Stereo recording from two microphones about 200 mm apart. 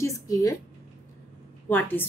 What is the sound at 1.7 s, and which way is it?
Speech, 10° left (ahead or behind).